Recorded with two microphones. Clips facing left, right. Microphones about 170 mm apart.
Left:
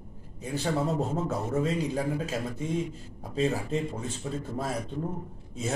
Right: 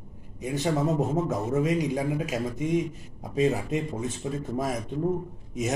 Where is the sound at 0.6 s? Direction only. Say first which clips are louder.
Right 3 dB; 15° right (ahead or behind).